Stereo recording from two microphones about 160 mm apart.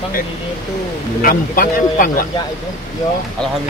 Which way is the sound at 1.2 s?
60° left (ahead or behind).